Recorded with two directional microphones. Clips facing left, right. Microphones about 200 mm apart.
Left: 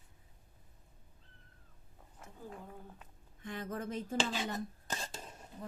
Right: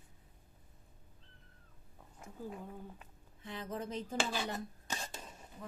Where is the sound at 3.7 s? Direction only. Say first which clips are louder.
Left 1 dB; 50° left (ahead or behind).